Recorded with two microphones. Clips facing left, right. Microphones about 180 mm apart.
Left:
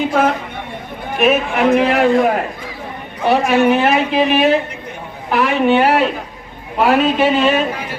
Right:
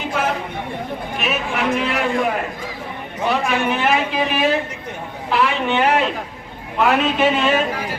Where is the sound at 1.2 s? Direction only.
50° left (ahead or behind).